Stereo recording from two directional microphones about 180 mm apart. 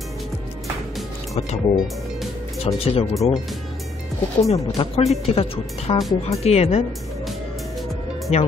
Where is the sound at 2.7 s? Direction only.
30° left (ahead or behind).